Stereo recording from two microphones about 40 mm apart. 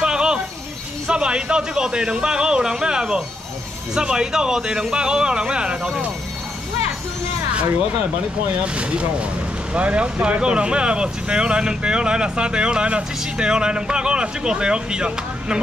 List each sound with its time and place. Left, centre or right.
0.0 s music: centre
1.0 s speech: right
8.6 s speech: right